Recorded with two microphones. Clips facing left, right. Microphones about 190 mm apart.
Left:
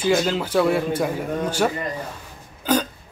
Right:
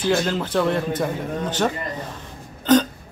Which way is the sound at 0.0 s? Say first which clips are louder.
Left 1 dB; 5° left (ahead or behind).